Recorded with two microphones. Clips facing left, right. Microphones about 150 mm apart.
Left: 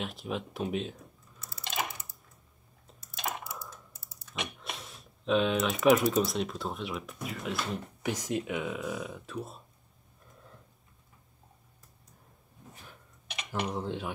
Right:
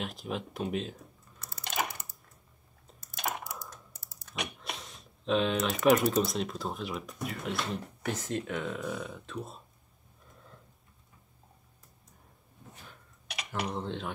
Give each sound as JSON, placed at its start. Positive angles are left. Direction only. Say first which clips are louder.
{"t": 0.0, "sound": "typing", "louder": "left 1 dB", "side_deg": 0}
{"t": 3.3, "sound": "typing", "louder": "right 1 dB", "side_deg": 0}
{"t": 4.6, "sound": "speech", "louder": "right 1 dB", "side_deg": 0}
{"t": 8.0, "sound": "speech", "louder": "left 3 dB", "side_deg": 15}
{"t": 13.5, "sound": "speech", "louder": "left 1 dB", "side_deg": -5}